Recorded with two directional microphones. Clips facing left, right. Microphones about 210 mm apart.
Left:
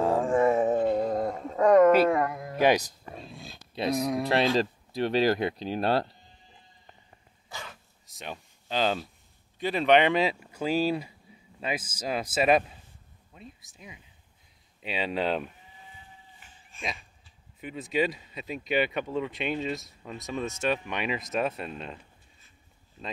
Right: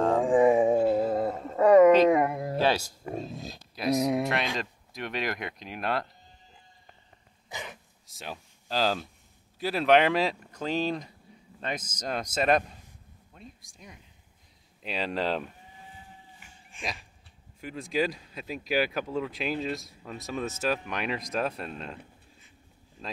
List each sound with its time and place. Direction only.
0.2 s a sound: 15° right (ahead or behind)
2.0 s a sound: 20° right (ahead or behind)
2.6 s speech: 15° left (ahead or behind)
3.0 s speech: 45° right (ahead or behind)
3.7 s speech: 25° left (ahead or behind)
7.4 s dog: 20° right (ahead or behind)
8.1 s speech: centre (ahead or behind)
16.3 s a sound: 10° right (ahead or behind)
17.6 s speech: centre (ahead or behind)